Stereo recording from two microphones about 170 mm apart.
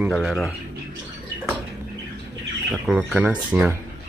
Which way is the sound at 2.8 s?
5° right (ahead or behind).